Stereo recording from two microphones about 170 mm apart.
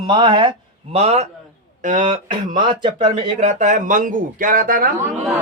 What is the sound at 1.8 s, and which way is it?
Speech, 50° right (ahead or behind).